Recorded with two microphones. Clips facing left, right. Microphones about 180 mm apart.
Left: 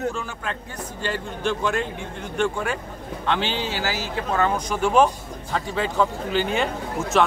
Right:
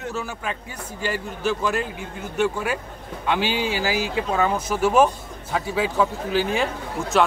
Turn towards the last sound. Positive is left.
turn(degrees=0)  # may be behind; listen again after turning